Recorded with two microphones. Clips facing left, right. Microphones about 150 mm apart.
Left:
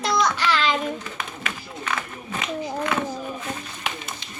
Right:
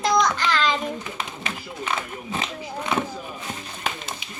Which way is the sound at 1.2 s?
20° right (ahead or behind).